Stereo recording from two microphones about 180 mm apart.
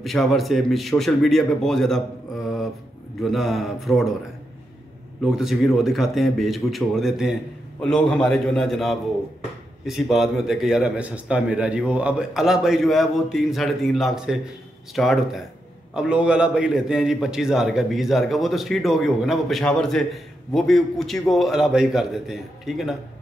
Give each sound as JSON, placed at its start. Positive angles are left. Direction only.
{"t": 0.0, "sound": "a man's voice", "side_deg": 0}
{"t": 3.2, "sound": "a man's voice", "side_deg": 0}
{"t": 5.2, "sound": "a man's voice", "side_deg": 0}